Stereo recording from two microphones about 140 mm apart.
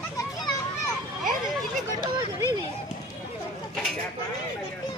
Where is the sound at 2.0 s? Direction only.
30° right (ahead or behind).